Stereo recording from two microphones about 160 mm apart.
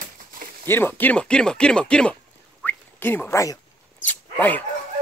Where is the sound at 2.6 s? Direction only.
15° left (ahead or behind).